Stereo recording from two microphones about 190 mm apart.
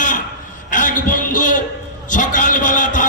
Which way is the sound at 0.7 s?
45° left (ahead or behind).